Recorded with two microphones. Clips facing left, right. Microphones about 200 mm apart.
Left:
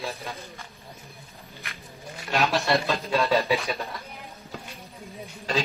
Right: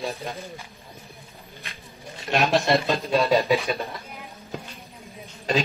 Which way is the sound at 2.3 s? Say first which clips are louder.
Right 3 dB; 15° right (ahead or behind).